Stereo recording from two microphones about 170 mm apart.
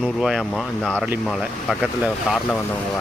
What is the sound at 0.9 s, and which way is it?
Speech, 10° right (ahead or behind).